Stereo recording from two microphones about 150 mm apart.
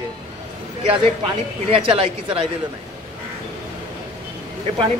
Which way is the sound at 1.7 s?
40° right (ahead or behind).